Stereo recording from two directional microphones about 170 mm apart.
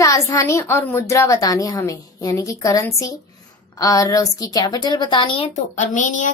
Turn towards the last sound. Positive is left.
turn(degrees=45)  # may be behind; listen again after turning